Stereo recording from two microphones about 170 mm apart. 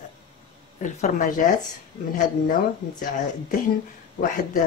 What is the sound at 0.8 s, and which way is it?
Speech, 45° left (ahead or behind).